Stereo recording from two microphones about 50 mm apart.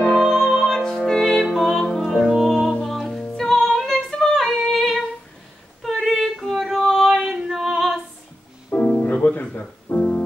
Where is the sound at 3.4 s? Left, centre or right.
Centre.